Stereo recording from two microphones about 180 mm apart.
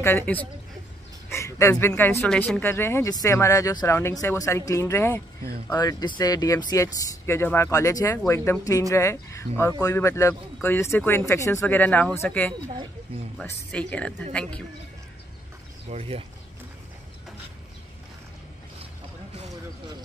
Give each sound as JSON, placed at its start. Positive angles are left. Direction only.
{"t": 0.0, "sound": "speech", "side_deg": 10}
{"t": 15.9, "sound": "speech", "side_deg": -35}